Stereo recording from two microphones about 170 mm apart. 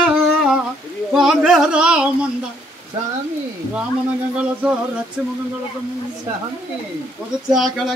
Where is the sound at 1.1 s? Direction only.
Centre (ahead or behind).